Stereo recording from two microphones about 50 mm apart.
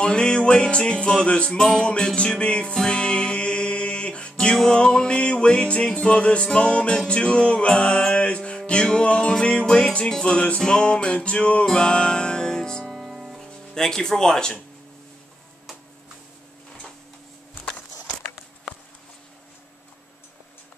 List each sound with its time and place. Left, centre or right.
0.0 s music: centre
12.9 s music: centre
13.5 s speech: centre